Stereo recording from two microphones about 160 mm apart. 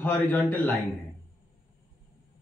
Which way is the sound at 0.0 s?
10° left (ahead or behind).